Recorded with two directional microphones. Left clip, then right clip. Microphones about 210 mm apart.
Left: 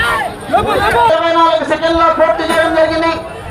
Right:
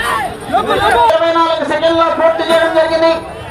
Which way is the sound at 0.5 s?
40° left (ahead or behind).